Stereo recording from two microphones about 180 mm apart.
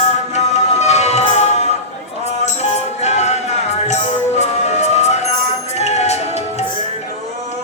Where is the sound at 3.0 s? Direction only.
40° left (ahead or behind).